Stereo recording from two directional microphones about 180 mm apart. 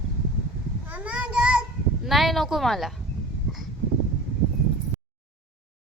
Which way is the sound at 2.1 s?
Centre (ahead or behind).